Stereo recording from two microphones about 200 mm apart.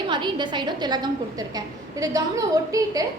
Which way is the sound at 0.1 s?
25° right (ahead or behind).